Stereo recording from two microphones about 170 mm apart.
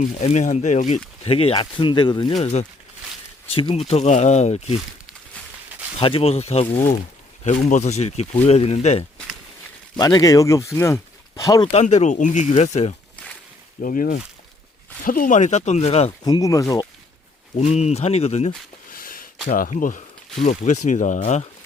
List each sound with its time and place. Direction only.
0.0 s speech: 40° left (ahead or behind)
2.3 s speech: 40° left (ahead or behind)
6.0 s speech: 35° left (ahead or behind)
10.0 s speech: 20° left (ahead or behind)
11.7 s speech: 40° left (ahead or behind)
13.8 s speech: 55° left (ahead or behind); by 16.1 s 40° left (ahead or behind)
16.2 s speech: 20° left (ahead or behind)
17.6 s speech: 40° left (ahead or behind)
18.9 s a sound: 55° left (ahead or behind)
19.5 s speech: 50° left (ahead or behind)